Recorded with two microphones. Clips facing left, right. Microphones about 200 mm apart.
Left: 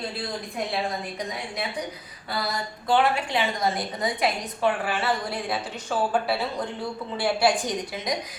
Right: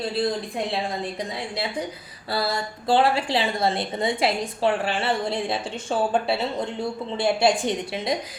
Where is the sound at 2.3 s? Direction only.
30° right (ahead or behind).